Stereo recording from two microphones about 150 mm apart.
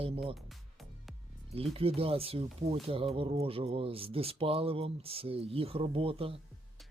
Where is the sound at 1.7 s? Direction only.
40° right (ahead or behind).